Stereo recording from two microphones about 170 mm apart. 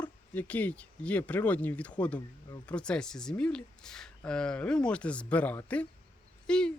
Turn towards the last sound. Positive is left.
turn(degrees=5)  # may be behind; listen again after turning